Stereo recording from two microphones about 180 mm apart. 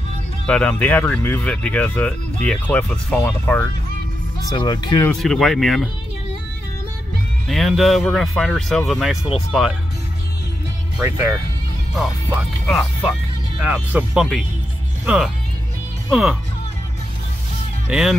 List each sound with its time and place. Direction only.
0.5 s speech: 5° left (ahead or behind)
4.4 s speech: 20° left (ahead or behind)
5.1 s speech: centre (ahead or behind)
7.4 s speech: centre (ahead or behind)
11.0 s speech: 15° right (ahead or behind)
12.6 s speech: centre (ahead or behind)
17.8 s speech: centre (ahead or behind)